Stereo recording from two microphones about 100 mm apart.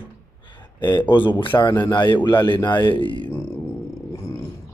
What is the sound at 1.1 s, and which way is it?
A man's voice, 55° left (ahead or behind).